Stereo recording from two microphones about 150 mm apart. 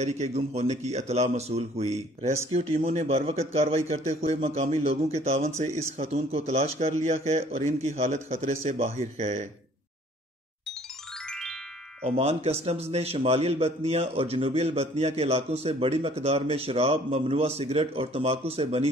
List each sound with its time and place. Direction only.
0.0 s a man's voice: 50° right (ahead or behind)
11.2 s music: 5° left (ahead or behind)
12.2 s a man's voice: 40° right (ahead or behind)